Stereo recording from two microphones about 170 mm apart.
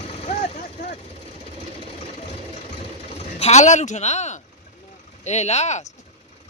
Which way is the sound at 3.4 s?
40° left (ahead or behind).